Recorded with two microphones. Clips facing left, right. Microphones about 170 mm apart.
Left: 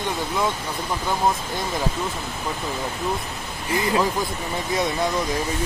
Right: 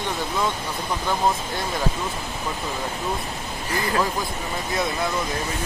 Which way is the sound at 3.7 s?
20° left (ahead or behind).